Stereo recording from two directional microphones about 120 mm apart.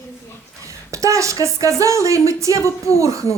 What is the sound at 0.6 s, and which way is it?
A woman's voice, 25° right (ahead or behind).